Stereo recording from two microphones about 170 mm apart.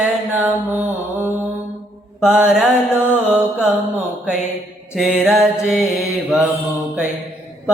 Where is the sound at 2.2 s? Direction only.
5° right (ahead or behind).